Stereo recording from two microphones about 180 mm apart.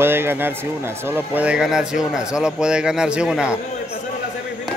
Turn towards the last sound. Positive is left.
turn(degrees=-5)  # may be behind; listen again after turning